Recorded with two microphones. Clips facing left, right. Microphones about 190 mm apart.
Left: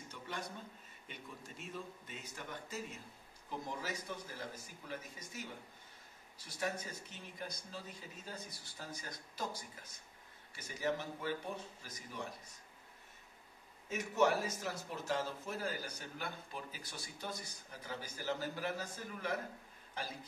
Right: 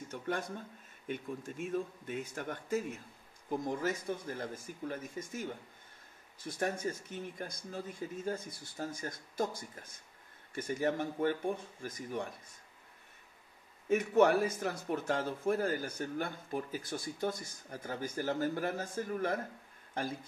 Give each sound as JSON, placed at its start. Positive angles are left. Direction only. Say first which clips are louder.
{"t": 0.1, "sound": "a man's voice", "louder": "right 9 dB", "side_deg": -50}
{"t": 13.8, "sound": "a man's voice", "louder": "right 7 dB", "side_deg": -60}